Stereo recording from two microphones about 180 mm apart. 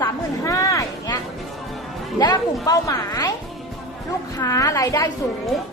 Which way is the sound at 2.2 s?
20° left (ahead or behind).